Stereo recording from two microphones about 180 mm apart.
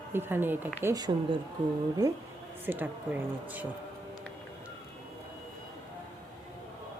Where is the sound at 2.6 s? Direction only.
10° right (ahead or behind).